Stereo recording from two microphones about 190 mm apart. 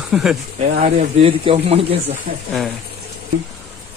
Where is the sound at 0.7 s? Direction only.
35° right (ahead or behind).